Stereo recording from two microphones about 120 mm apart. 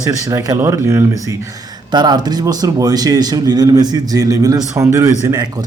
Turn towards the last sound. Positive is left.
turn(degrees=-25)  # may be behind; listen again after turning